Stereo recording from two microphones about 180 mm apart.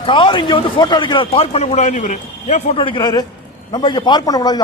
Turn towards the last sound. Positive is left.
turn(degrees=20)  # may be behind; listen again after turning